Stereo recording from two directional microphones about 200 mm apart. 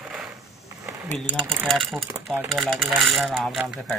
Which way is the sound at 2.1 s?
10° right (ahead or behind).